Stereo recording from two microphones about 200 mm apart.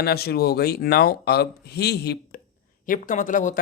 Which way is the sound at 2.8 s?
40° left (ahead or behind).